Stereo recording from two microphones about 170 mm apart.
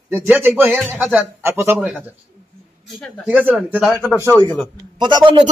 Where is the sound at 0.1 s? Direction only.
10° right (ahead or behind).